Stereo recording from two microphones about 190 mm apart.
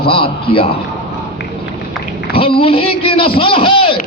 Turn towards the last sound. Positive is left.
turn(degrees=25)  # may be behind; listen again after turning